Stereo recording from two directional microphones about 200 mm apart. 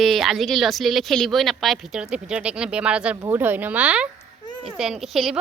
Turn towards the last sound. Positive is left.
turn(degrees=0)  # may be behind; listen again after turning